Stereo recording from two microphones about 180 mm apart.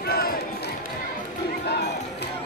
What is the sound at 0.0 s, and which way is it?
Basketball bounce, 55° left (ahead or behind).